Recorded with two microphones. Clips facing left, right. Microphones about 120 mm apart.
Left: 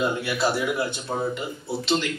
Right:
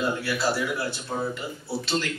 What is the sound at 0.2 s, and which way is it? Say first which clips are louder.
A man's voice: left 2 dB; 20° left (ahead or behind).